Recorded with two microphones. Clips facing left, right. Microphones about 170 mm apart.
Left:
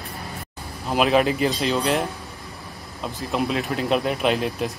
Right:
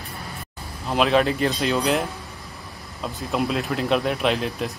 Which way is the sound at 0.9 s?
5° left (ahead or behind).